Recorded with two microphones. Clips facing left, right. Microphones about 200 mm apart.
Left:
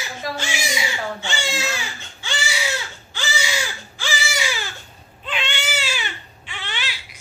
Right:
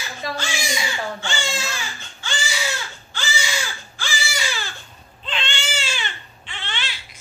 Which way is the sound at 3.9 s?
20° left (ahead or behind).